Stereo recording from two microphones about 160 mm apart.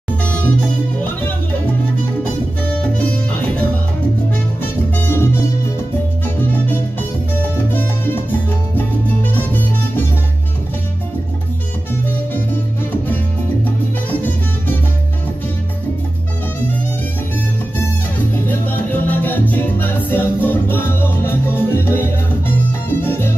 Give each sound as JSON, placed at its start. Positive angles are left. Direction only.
{"t": 0.2, "sound": "music", "side_deg": 10}
{"t": 2.7, "sound": "music", "side_deg": 10}
{"t": 18.5, "sound": "music", "side_deg": 10}
{"t": 22.7, "sound": "salsa music", "side_deg": 15}